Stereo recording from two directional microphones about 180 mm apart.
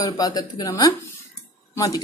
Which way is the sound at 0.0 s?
20° left (ahead or behind).